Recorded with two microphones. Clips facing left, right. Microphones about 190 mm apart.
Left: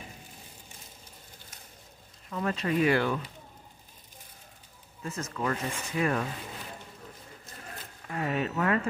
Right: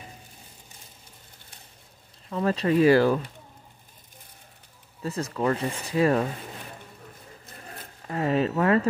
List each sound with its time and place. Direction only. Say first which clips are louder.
2.2 s speech: right 6 dB; 35° right (ahead or behind)
5.0 s speech: right 6 dB; 35° right (ahead or behind)
8.1 s speech: right 6 dB; 30° right (ahead or behind)